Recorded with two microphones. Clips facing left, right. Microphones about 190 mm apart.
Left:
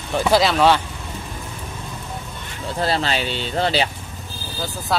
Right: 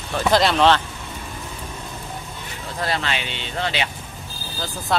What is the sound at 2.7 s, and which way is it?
Speech, 30° left (ahead or behind).